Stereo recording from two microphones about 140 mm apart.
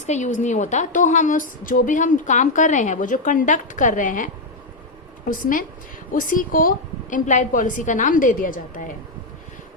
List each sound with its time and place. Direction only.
0.1 s a woman's voice: 60° left (ahead or behind)
5.3 s a woman's voice: 80° left